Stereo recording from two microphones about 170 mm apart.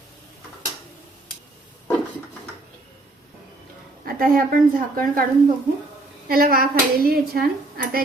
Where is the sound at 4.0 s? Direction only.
55° right (ahead or behind).